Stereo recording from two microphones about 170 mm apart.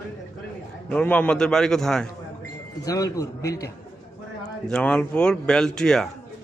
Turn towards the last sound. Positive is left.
turn(degrees=5)  # may be behind; listen again after turning